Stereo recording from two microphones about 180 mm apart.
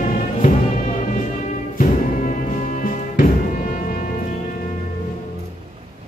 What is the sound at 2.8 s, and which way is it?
Music, 50° left (ahead or behind).